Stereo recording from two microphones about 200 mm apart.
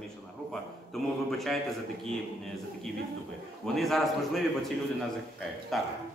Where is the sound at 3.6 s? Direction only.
Centre (ahead or behind).